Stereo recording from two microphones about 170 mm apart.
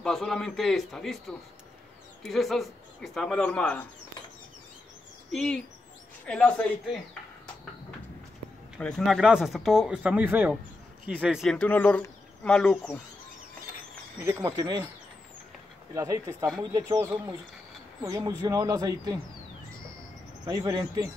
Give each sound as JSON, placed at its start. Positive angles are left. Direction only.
{"t": 0.0, "sound": "speech", "side_deg": 5}
{"t": 2.2, "sound": "speech", "side_deg": 0}
{"t": 5.3, "sound": "speech", "side_deg": 5}
{"t": 8.7, "sound": "speech", "side_deg": 5}
{"t": 14.2, "sound": "speech", "side_deg": -20}
{"t": 15.9, "sound": "speech", "side_deg": -20}
{"t": 20.4, "sound": "speech", "side_deg": -20}